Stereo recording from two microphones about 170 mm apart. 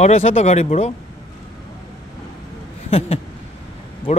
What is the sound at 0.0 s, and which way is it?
Speech, 35° left (ahead or behind).